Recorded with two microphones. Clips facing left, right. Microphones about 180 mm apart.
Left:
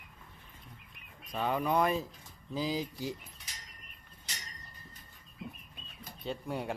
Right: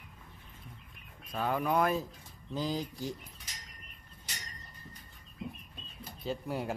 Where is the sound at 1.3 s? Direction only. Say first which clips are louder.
Even; centre (ahead or behind).